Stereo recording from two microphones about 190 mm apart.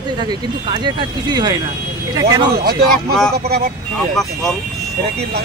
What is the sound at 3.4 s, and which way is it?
Speech, 55° right (ahead or behind).